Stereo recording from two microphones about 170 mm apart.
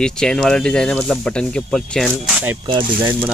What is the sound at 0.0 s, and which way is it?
Speech, 5° left (ahead or behind).